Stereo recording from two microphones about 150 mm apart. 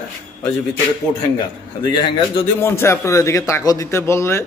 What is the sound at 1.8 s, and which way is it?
Mantra, 30° left (ahead or behind).